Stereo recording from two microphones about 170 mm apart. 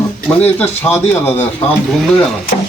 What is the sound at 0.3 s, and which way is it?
Speech, 10° left (ahead or behind).